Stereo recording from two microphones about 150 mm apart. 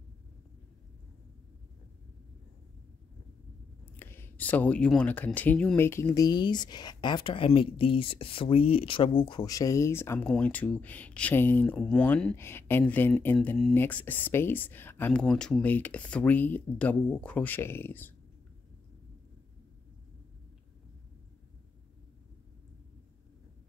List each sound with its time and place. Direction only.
3.9 s speech: 15° left (ahead or behind)